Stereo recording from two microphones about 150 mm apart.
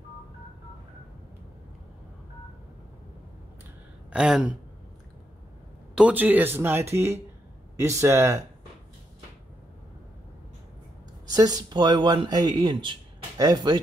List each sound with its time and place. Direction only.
4.1 s speech: 5° right (ahead or behind)
5.9 s speech: 10° right (ahead or behind)
11.2 s speech: 25° right (ahead or behind)